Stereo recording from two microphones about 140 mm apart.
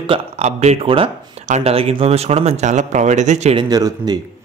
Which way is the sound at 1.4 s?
50° right (ahead or behind).